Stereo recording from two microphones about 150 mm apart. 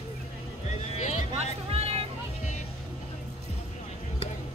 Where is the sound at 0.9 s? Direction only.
50° left (ahead or behind).